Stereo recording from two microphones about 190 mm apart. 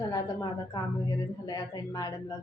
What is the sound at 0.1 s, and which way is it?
A woman's voice, 20° left (ahead or behind).